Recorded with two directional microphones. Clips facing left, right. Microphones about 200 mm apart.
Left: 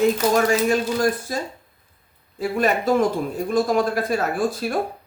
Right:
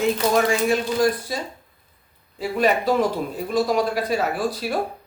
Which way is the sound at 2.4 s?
50° left (ahead or behind).